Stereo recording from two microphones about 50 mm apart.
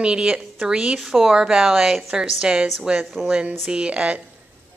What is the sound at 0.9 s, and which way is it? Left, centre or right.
A woman's voice, centre.